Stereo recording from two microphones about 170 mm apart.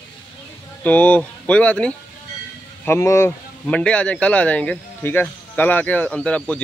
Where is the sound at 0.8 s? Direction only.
10° left (ahead or behind).